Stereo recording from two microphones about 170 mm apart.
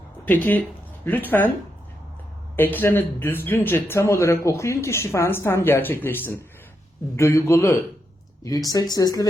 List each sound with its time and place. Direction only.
0.3 s a man's voice: 10° left (ahead or behind)
2.6 s a man's voice: 10° left (ahead or behind)